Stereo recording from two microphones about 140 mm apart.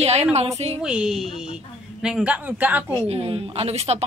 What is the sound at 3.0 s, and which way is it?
Speech, 45° right (ahead or behind).